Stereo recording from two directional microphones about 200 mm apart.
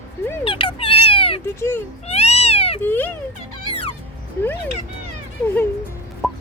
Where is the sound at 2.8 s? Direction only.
10° left (ahead or behind).